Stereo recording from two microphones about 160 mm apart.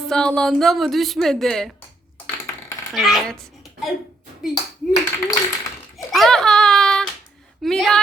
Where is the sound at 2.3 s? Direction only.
15° left (ahead or behind).